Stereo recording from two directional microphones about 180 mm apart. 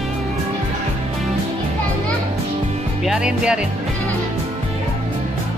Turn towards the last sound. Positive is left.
turn(degrees=-5)  # may be behind; listen again after turning